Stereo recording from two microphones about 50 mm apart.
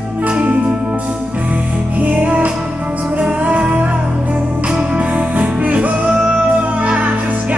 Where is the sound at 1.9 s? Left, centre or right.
Right.